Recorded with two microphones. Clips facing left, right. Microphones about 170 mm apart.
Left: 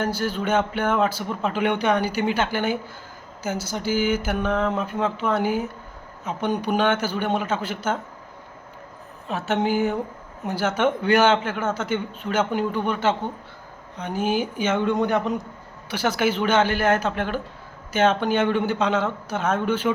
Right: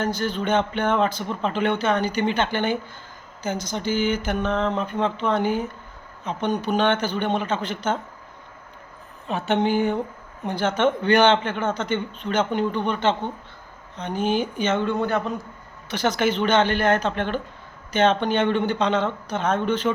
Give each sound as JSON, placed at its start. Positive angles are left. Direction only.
{"t": 0.0, "sound": "a man's voice", "side_deg": 10}
{"t": 9.2, "sound": "a man's voice", "side_deg": 0}